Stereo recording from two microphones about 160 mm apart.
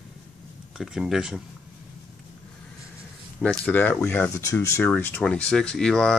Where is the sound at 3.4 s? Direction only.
10° left (ahead or behind).